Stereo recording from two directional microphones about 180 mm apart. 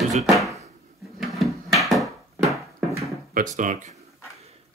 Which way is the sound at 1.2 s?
Centre (ahead or behind).